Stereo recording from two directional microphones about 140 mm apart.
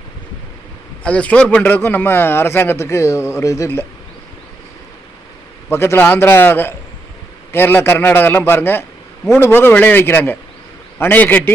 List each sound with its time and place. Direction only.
1.0 s speech: 10° left (ahead or behind)
5.7 s speech: 15° left (ahead or behind)